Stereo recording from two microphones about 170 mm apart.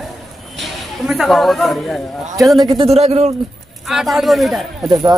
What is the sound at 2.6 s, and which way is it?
Speech, 25° right (ahead or behind).